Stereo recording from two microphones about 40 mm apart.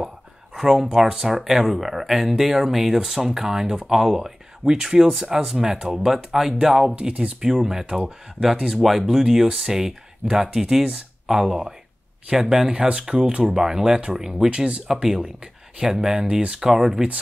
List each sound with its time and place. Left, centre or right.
0.6 s speech: centre
5.9 s speech: centre
7.0 s speech: right
7.4 s speech: centre
14.5 s speech: right
15.8 s speech: centre
16.6 s speech: centre